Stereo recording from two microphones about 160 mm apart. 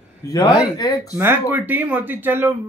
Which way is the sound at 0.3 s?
25° left (ahead or behind).